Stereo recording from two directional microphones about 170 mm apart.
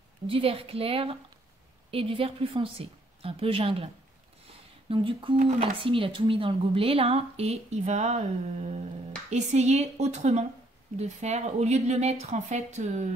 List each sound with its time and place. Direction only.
0.3 s speech: 35° right (ahead or behind)